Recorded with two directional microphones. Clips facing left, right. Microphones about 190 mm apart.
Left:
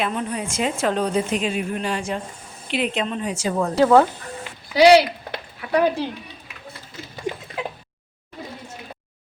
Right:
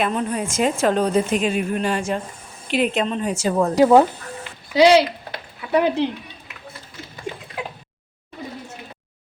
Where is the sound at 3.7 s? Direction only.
15° right (ahead or behind).